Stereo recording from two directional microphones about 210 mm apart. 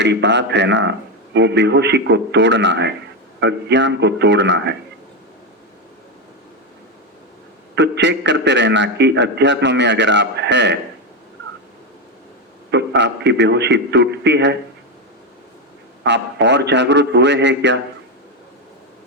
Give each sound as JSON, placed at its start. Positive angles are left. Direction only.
{"t": 0.0, "sound": "a man's voice", "side_deg": -55}
{"t": 7.8, "sound": "a man's voice", "side_deg": -55}
{"t": 12.7, "sound": "a man's voice", "side_deg": -55}
{"t": 16.0, "sound": "a man's voice", "side_deg": -55}